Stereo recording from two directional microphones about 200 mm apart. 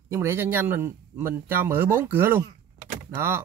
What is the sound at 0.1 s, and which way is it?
A man's voice, 15° right (ahead or behind).